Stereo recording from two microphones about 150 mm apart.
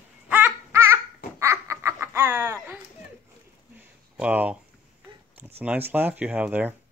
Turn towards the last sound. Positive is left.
turn(degrees=-10)  # may be behind; listen again after turning